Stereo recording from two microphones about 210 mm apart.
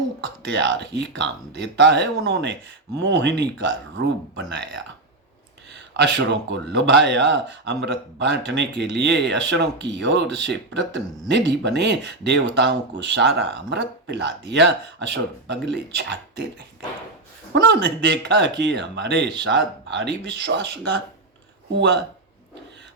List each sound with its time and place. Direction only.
0.4 s speech: 55° right (ahead or behind)
6.0 s speech: 55° right (ahead or behind)
17.5 s speech: 55° right (ahead or behind)
21.8 s speech: 55° right (ahead or behind)